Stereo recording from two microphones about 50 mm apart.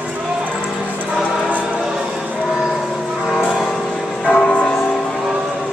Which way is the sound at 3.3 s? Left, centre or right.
Centre.